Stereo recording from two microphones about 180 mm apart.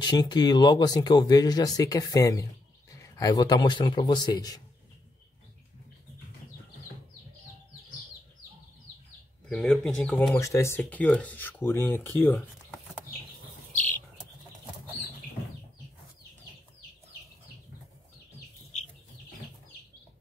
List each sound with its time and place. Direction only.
0.0 s speech: 25° left (ahead or behind)
9.5 s speech: centre (ahead or behind)